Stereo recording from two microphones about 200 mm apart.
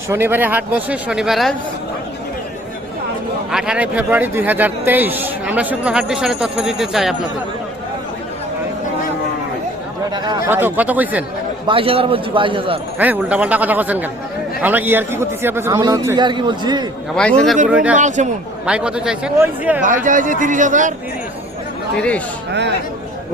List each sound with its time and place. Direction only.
0.1 s a man's voice: 10° right (ahead or behind)
3.5 s a man's voice: 5° right (ahead or behind)
10.2 s a man's voice: 20° right (ahead or behind)
10.5 s a man's voice: 10° right (ahead or behind)
11.6 s a man's voice: 25° right (ahead or behind)
13.0 s a man's voice: 10° right (ahead or behind)
17.2 s a man's voice: 5° left (ahead or behind)
17.9 s speech: 35° right (ahead or behind)
18.6 s a man's voice: 5° right (ahead or behind)
19.8 s speech: 40° right (ahead or behind)
21.9 s speech: 5° left (ahead or behind)